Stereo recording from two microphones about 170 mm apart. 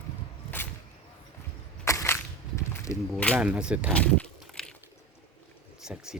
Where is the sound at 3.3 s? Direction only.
5° right (ahead or behind).